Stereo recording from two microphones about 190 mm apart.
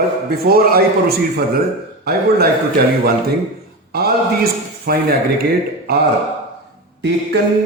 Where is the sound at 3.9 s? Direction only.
55° right (ahead or behind).